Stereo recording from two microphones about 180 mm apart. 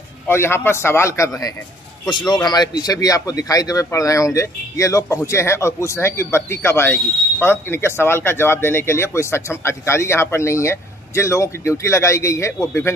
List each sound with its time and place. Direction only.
0.3 s speech: 15° left (ahead or behind)